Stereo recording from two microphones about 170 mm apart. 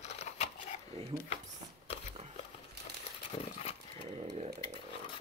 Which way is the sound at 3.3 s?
40° left (ahead or behind).